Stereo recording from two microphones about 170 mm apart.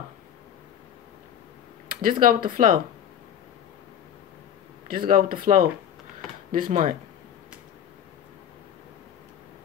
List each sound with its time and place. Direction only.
2.0 s speech: 55° right (ahead or behind)
4.8 s speech: 55° right (ahead or behind)